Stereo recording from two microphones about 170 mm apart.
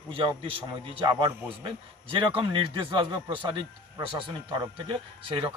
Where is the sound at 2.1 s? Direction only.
30° right (ahead or behind).